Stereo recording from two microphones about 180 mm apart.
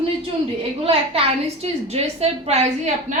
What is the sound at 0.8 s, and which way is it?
A woman's voice, 30° right (ahead or behind).